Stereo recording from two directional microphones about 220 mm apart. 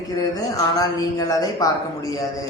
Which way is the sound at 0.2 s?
15° left (ahead or behind).